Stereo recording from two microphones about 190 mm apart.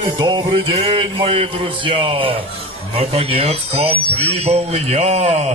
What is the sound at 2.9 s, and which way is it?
Speech, 30° right (ahead or behind).